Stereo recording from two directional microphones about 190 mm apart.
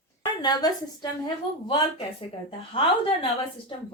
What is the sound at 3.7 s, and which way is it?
Speech, 30° left (ahead or behind).